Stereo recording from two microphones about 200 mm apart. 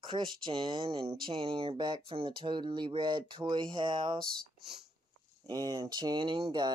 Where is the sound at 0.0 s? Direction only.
25° right (ahead or behind).